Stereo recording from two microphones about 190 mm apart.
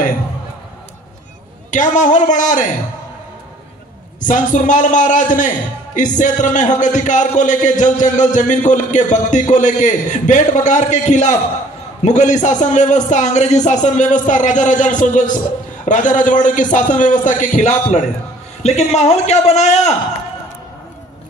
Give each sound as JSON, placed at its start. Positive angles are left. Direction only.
{"t": 1.7, "sound": "speech", "side_deg": 40}
{"t": 4.2, "sound": "speech", "side_deg": 40}